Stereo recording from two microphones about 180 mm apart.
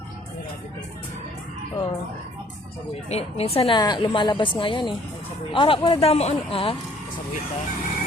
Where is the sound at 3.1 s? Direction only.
35° left (ahead or behind).